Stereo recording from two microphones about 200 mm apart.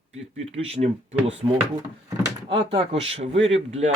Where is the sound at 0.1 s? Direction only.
30° right (ahead or behind).